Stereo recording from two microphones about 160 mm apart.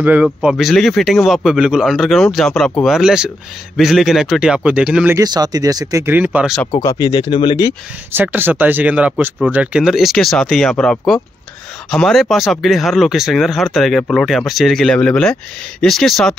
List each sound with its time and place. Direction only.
0.0 s speech: 10° right (ahead or behind)
5.1 s speech: 25° right (ahead or behind); by 6.5 s 10° right (ahead or behind)
6.7 s speech: 20° left (ahead or behind)
8.1 s speech: 10° right (ahead or behind)